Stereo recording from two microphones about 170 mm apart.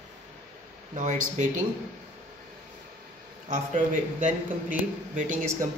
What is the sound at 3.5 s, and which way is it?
A man's voice, 50° right (ahead or behind).